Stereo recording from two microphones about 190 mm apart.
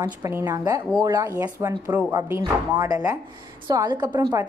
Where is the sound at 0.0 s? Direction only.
15° right (ahead or behind).